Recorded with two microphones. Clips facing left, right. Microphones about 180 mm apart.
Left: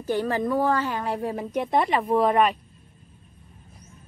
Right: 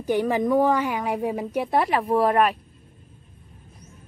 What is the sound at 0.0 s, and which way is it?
A woman's voice, 15° right (ahead or behind).